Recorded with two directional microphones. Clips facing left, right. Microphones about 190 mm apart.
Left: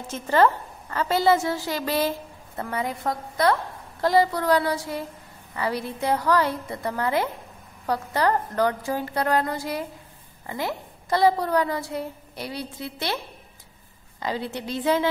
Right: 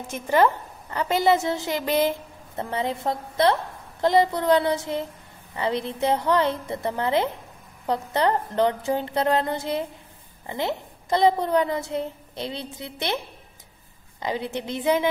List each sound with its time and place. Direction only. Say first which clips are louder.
0.1 s a woman's voice: even; 15° right (ahead or behind)
14.2 s a woman's voice: right 1 dB; 20° right (ahead or behind)